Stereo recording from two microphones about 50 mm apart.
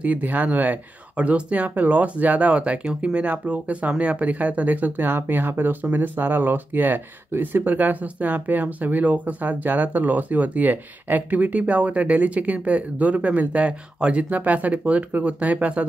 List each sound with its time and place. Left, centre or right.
0.0 s speech: right